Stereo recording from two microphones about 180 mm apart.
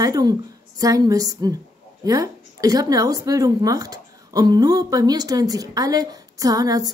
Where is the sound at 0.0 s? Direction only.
20° right (ahead or behind).